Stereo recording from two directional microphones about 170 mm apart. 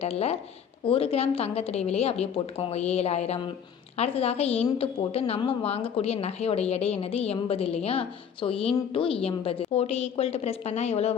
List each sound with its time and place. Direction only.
0.0 s speech: 35° left (ahead or behind)